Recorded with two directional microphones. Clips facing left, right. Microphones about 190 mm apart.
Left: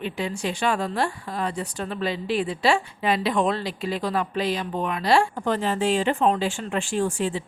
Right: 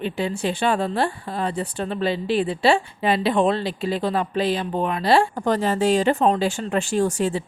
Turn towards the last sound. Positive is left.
turn(degrees=-40)  # may be behind; listen again after turning